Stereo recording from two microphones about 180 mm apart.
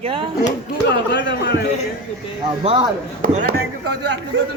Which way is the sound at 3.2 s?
45° right (ahead or behind).